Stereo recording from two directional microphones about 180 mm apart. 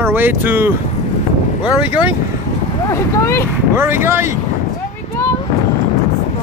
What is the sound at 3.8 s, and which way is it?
Speech, 15° right (ahead or behind).